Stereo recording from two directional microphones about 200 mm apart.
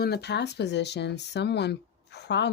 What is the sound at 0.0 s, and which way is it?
Speech, 55° left (ahead or behind).